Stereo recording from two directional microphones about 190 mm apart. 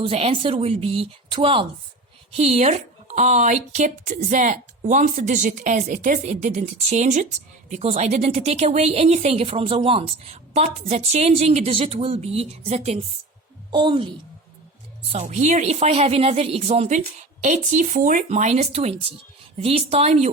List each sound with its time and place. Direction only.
0.0 s a woman's voice: 30° right (ahead or behind)
15.2 s speech: 35° right (ahead or behind)